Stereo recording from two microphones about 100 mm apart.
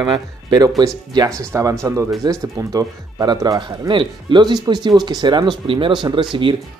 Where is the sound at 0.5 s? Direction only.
40° right (ahead or behind).